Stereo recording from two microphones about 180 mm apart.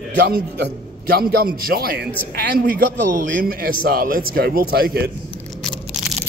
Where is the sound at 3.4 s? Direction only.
55° right (ahead or behind).